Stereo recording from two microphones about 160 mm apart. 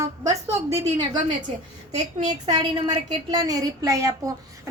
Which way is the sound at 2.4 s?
25° right (ahead or behind).